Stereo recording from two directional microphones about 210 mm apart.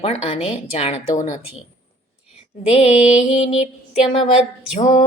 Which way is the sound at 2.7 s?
30° left (ahead or behind).